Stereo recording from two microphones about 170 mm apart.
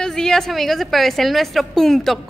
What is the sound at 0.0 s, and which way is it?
A woman's voice, 5° left (ahead or behind).